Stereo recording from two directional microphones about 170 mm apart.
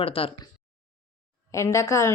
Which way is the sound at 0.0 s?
35° left (ahead or behind).